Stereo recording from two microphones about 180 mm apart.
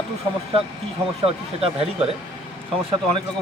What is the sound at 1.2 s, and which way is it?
Speech, 35° right (ahead or behind).